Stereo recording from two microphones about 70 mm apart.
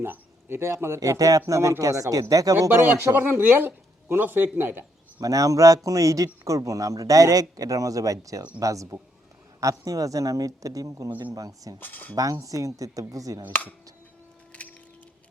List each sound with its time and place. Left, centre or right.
0.0 s speech: right
0.9 s speech: right
2.7 s speech: right
3.4 s speech: right
5.2 s speech: right
11.8 s speech: left
12.1 s speech: right